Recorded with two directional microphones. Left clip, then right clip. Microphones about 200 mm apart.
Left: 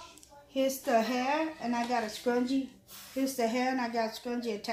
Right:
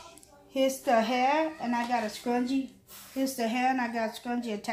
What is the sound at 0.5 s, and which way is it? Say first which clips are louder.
A woman's voice: right 3 dB; 45° right (ahead or behind).